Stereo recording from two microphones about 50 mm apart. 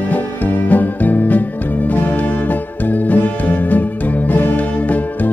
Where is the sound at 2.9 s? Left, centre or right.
Left.